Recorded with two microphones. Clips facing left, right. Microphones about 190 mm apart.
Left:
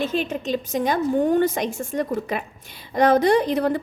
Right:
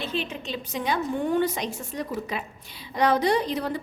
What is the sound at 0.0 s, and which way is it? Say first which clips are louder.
A woman's voice: left 7 dB; 45° left (ahead or behind).